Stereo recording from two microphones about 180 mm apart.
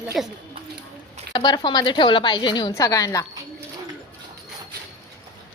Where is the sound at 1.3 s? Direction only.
25° left (ahead or behind).